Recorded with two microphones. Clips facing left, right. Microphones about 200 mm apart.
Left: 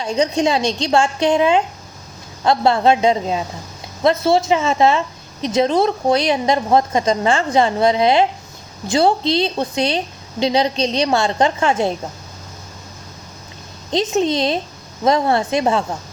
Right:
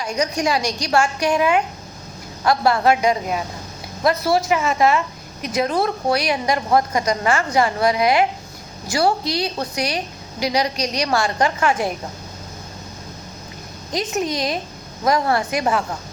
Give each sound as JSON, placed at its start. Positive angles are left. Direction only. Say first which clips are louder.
{"t": 0.0, "sound": "a woman's voice", "louder": "left 4 dB", "side_deg": 25}
{"t": 13.9, "sound": "a woman's voice", "louder": "left 5 dB", "side_deg": 25}